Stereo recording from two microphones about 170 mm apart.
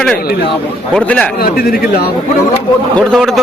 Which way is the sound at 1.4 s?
60° left (ahead or behind).